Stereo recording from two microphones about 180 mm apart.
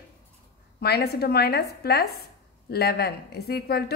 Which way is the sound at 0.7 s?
60° left (ahead or behind).